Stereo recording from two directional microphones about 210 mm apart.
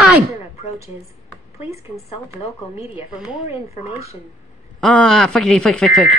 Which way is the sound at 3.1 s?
5° right (ahead or behind).